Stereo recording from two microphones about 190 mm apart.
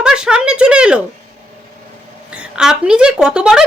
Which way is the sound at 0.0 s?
5° right (ahead or behind).